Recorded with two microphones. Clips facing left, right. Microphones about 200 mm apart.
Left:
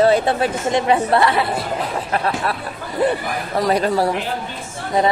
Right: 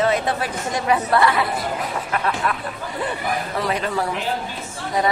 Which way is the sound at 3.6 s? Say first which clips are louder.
Left 8 dB; 40° left (ahead or behind).